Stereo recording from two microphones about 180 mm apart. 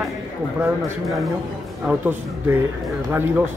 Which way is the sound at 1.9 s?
10° right (ahead or behind).